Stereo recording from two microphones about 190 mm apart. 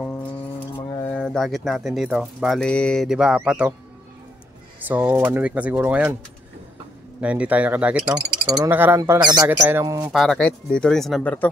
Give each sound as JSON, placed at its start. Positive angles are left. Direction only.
{"t": 0.0, "sound": "a sound", "side_deg": 10}
{"t": 0.7, "sound": "mantra", "side_deg": 20}
{"t": 1.1, "sound": "speech", "side_deg": 5}
{"t": 4.8, "sound": "speech", "side_deg": -10}
{"t": 7.2, "sound": "speech", "side_deg": -5}
{"t": 10.1, "sound": "speech", "side_deg": 0}